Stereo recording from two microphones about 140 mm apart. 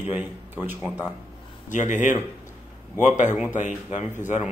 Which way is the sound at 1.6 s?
60° left (ahead or behind).